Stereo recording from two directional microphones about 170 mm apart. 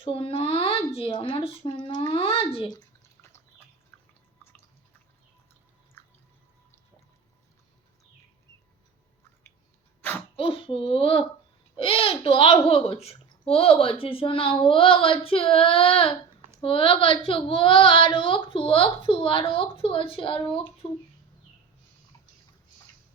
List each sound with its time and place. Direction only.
0.0 s a sound: 35° left (ahead or behind)
0.9 s speech: 35° left (ahead or behind)
3.9 s drip: 10° left (ahead or behind)
10.0 s sneeze: 10° left (ahead or behind)
10.3 s a child's voice: 30° left (ahead or behind)